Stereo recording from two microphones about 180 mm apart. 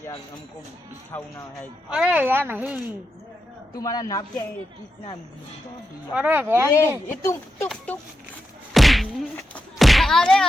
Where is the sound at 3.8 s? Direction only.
20° left (ahead or behind).